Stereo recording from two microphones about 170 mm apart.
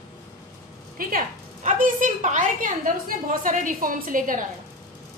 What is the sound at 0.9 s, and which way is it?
A woman's voice, 55° right (ahead or behind).